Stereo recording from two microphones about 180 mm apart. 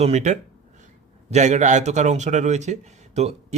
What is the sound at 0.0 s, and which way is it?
A man's voice, 40° right (ahead or behind).